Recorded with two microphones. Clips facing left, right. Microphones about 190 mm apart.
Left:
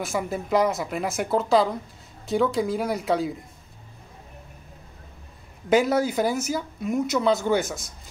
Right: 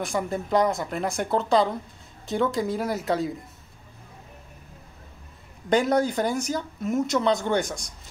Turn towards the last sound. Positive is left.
turn(degrees=5)  # may be behind; listen again after turning